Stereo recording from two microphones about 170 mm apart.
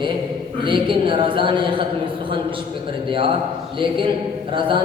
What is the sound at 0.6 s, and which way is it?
A man's voice, 30° right (ahead or behind).